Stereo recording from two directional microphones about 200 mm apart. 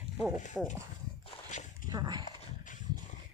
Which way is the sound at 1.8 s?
20° right (ahead or behind).